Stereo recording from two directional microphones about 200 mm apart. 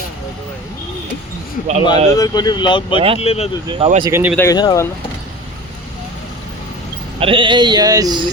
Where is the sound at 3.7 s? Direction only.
30° right (ahead or behind).